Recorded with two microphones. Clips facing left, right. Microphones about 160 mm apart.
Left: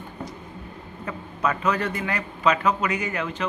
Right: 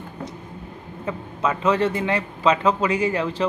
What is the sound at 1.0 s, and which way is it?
Speech, 25° right (ahead or behind).